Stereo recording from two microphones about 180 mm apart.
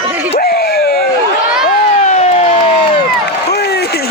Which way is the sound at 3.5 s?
65° left (ahead or behind).